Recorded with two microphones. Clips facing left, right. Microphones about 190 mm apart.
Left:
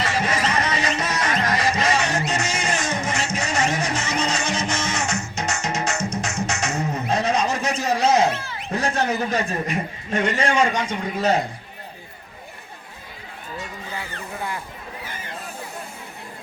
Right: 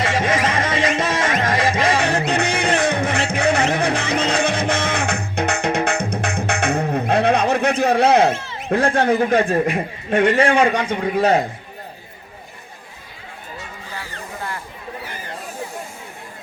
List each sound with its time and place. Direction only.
0.0 s music: 50° right (ahead or behind)
8.7 s a man's voice: 55° right (ahead or behind)